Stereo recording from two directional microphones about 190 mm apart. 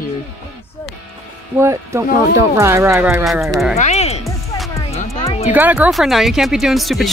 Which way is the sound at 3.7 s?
35° left (ahead or behind).